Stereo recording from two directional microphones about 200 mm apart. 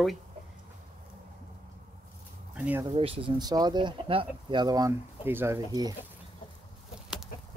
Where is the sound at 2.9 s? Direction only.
30° right (ahead or behind).